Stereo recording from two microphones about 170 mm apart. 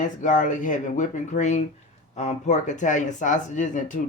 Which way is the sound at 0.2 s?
50° left (ahead or behind).